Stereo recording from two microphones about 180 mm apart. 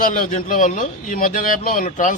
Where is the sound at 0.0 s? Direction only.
50° left (ahead or behind).